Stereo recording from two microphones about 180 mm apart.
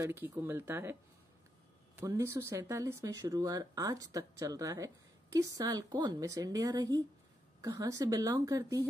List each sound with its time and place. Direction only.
0.0 s speech: 15° right (ahead or behind)
2.0 s speech: 15° right (ahead or behind)